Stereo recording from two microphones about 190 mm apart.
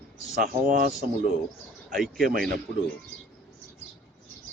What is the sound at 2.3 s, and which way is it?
Speech, 45° right (ahead or behind).